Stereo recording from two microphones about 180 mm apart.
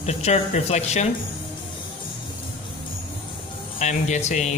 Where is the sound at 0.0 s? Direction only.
35° left (ahead or behind).